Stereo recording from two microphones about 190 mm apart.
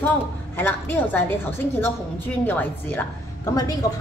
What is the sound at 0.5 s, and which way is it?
Speech, 10° left (ahead or behind).